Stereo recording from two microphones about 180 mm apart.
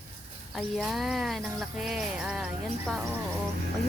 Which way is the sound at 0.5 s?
Centre (ahead or behind).